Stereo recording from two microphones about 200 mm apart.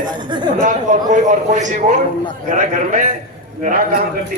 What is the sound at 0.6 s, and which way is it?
A man's voice, 40° right (ahead or behind).